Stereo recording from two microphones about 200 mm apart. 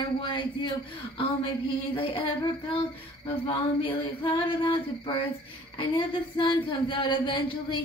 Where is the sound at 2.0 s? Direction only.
25° left (ahead or behind).